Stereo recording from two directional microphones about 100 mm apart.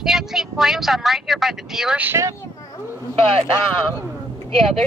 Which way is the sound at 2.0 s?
25° right (ahead or behind).